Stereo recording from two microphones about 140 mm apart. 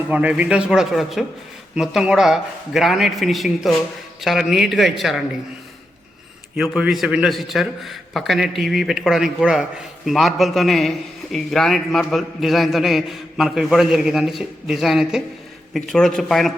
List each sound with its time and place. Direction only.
0.1 s a man's voice: 10° right (ahead or behind)
6.6 s a man's voice: centre (ahead or behind)